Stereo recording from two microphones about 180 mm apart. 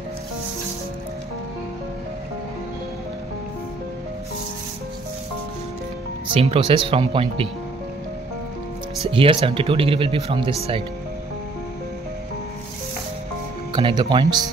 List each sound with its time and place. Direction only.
6.3 s speech: 30° right (ahead or behind)
9.0 s speech: 30° right (ahead or behind)
13.7 s speech: 25° right (ahead or behind)